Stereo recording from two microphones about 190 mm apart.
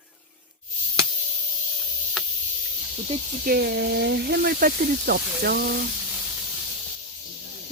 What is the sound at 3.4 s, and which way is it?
Speech, 55° right (ahead or behind).